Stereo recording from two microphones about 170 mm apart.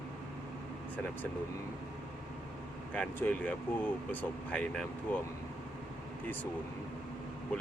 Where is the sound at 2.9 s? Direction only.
5° left (ahead or behind).